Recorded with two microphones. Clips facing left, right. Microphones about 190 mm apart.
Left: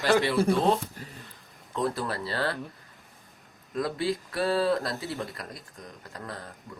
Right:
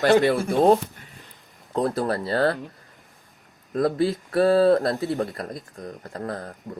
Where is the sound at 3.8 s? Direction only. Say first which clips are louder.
Right 7 dB; 40° right (ahead or behind).